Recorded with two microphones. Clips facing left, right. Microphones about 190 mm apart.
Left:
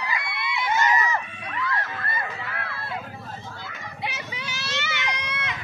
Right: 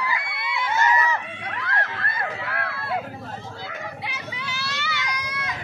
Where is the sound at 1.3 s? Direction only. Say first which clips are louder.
Even; 70° right (ahead or behind).